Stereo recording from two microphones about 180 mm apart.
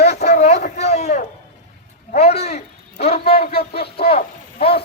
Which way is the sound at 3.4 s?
60° left (ahead or behind).